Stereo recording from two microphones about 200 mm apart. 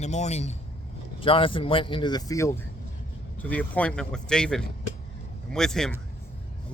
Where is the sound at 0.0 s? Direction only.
35° left (ahead or behind).